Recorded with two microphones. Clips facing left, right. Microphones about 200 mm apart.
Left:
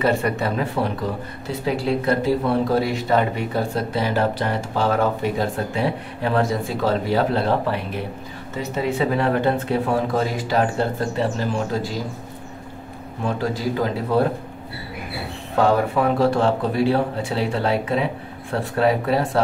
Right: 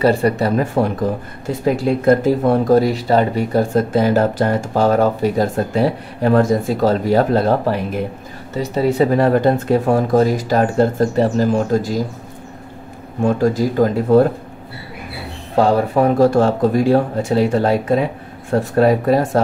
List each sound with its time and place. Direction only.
0.0 s speech: 35° right (ahead or behind)
13.2 s speech: 45° right (ahead or behind)
15.5 s speech: 35° right (ahead or behind)